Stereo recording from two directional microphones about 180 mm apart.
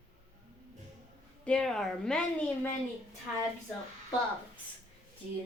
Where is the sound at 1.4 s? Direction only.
5° left (ahead or behind).